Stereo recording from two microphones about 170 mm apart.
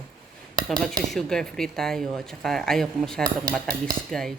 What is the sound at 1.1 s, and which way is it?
Speech, 5° left (ahead or behind).